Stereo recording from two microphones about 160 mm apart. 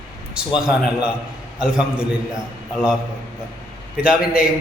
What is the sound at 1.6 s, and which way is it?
Speech, 5° right (ahead or behind).